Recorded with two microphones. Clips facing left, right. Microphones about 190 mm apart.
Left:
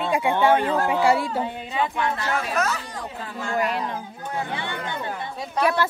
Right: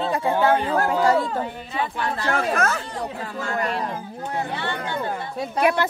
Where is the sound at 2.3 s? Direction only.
50° right (ahead or behind).